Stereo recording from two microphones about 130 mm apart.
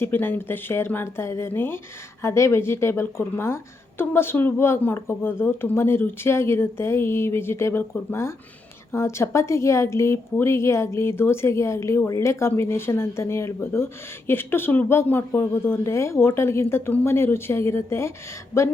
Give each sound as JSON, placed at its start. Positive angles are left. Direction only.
{"t": 0.0, "sound": "a woman's voice", "side_deg": 15}